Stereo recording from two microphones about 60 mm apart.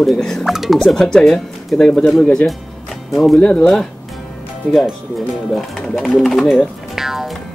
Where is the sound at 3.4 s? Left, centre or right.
Left.